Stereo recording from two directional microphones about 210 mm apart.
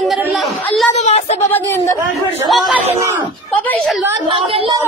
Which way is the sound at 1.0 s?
30° left (ahead or behind).